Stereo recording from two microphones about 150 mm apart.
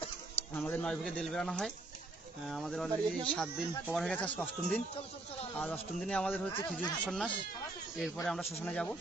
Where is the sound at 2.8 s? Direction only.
5° left (ahead or behind).